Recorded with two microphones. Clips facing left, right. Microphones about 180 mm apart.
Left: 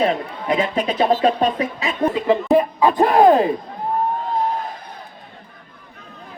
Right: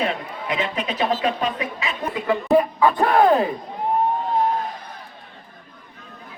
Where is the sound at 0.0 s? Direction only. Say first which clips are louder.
Left 5 dB; 35° left (ahead or behind); by 3.2 s 20° left (ahead or behind).